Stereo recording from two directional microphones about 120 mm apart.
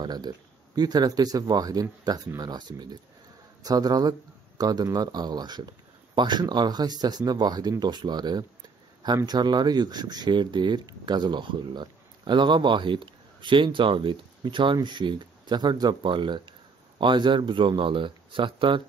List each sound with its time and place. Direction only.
0.0 s speech: 35° right (ahead or behind)